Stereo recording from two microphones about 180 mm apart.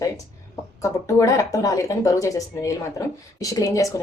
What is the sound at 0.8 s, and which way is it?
Speech, 20° left (ahead or behind).